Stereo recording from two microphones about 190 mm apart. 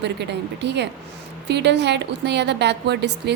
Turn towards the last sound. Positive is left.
turn(degrees=-60)  # may be behind; listen again after turning